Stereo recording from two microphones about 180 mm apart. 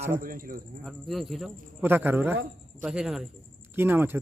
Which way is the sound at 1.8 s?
10° right (ahead or behind).